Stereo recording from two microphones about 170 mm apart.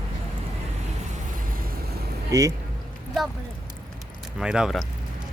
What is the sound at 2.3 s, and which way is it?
Speech, 20° right (ahead or behind).